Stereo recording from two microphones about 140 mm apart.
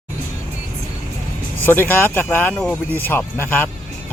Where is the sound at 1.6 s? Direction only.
15° left (ahead or behind).